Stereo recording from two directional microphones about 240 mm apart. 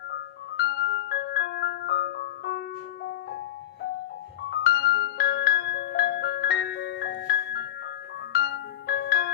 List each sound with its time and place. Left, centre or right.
0.1 s music: left
4.4 s music: left